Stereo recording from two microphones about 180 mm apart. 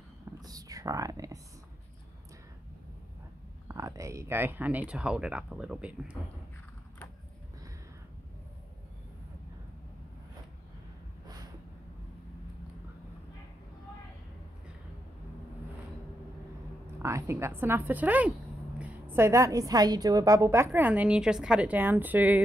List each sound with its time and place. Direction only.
0.4 s whispering: 20° right (ahead or behind)
3.6 s a woman's voice: 20° right (ahead or behind)
17.0 s a woman's voice: 15° right (ahead or behind)